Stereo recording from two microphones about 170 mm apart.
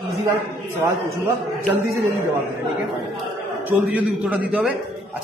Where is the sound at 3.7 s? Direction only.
10° right (ahead or behind).